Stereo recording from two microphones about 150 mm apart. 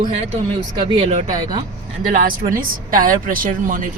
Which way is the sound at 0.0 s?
45° right (ahead or behind).